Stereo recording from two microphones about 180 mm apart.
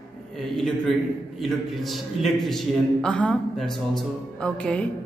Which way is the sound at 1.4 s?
Centre (ahead or behind).